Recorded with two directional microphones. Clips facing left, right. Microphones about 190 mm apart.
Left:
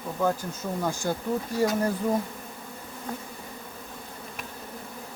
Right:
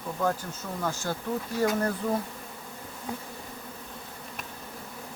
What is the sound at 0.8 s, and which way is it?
Speech, 15° left (ahead or behind).